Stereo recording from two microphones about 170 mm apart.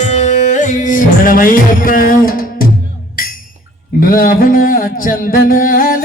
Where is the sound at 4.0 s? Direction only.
55° left (ahead or behind).